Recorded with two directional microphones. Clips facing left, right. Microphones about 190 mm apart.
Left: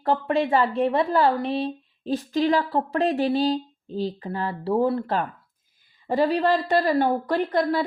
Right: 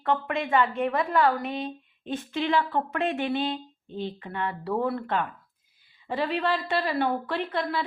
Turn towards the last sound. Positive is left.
turn(degrees=40)  # may be behind; listen again after turning